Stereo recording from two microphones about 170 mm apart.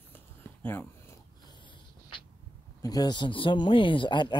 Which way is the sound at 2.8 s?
20° left (ahead or behind).